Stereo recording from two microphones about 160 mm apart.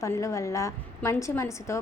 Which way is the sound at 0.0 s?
20° left (ahead or behind).